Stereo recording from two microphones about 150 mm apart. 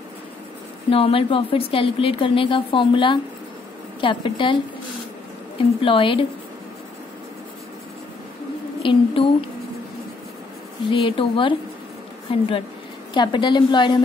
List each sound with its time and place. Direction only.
0.8 s speech: 40° left (ahead or behind)
5.8 s speech: 35° left (ahead or behind)
8.8 s speech: 35° left (ahead or behind)
10.9 s speech: 35° left (ahead or behind)